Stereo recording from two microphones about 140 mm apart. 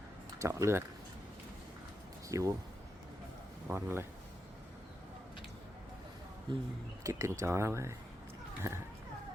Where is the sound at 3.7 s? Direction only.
15° right (ahead or behind).